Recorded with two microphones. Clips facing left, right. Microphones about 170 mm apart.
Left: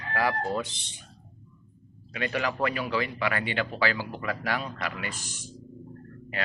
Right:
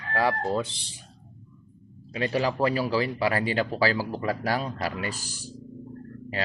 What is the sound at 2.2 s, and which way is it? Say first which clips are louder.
Speech: right 3 dB; 30° right (ahead or behind).